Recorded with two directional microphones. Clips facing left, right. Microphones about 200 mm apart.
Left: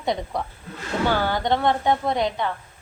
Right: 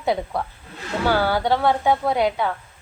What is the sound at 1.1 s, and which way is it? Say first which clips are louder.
A woman's voice: right 2 dB; 10° right (ahead or behind).